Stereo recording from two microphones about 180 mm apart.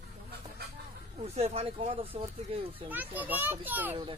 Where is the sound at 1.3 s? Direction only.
35° right (ahead or behind).